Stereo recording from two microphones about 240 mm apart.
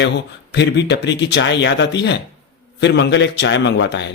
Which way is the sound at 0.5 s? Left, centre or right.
Left.